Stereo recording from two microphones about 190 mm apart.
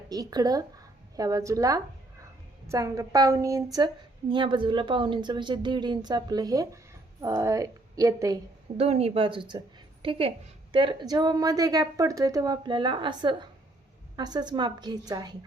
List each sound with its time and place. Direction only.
0.1 s a woman's voice: 20° right (ahead or behind)
8.8 s a woman's voice: 35° right (ahead or behind)